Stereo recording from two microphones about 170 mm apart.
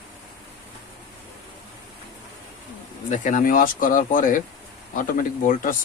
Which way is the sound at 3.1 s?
50° left (ahead or behind).